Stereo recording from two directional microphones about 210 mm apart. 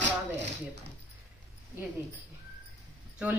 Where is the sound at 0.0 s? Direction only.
55° right (ahead or behind).